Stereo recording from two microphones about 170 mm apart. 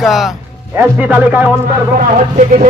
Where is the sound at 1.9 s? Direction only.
50° right (ahead or behind).